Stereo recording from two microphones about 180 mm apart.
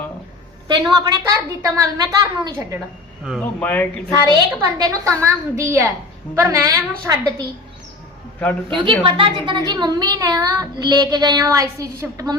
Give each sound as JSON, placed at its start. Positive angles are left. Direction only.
{"t": 0.7, "sound": "a woman's voice", "side_deg": -25}
{"t": 3.4, "sound": "speech", "side_deg": 10}
{"t": 4.5, "sound": "a woman's voice", "side_deg": -15}
{"t": 8.4, "sound": "speech", "side_deg": 10}
{"t": 8.8, "sound": "a woman's voice", "side_deg": -30}